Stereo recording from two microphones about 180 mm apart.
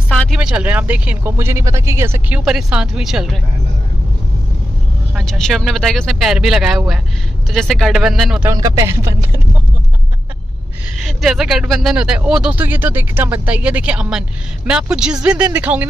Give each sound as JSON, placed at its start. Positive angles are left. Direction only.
{"t": 0.1, "sound": "a sound", "side_deg": 5}
{"t": 0.4, "sound": "speech", "side_deg": -5}
{"t": 5.1, "sound": "speech", "side_deg": 0}
{"t": 8.5, "sound": "speech", "side_deg": -15}
{"t": 11.0, "sound": "speech", "side_deg": 0}